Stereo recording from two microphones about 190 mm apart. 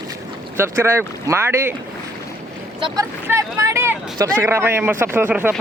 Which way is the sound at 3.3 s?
15° right (ahead or behind).